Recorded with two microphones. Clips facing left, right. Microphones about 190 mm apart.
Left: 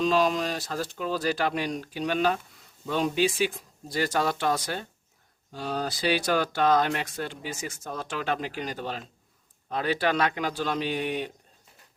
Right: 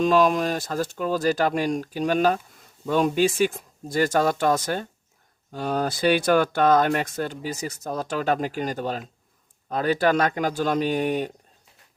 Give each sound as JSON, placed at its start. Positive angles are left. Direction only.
{"t": 0.0, "sound": "speech", "side_deg": -50}